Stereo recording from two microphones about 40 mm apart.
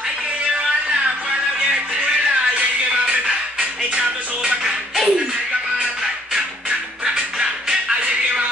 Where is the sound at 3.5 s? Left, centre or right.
Right.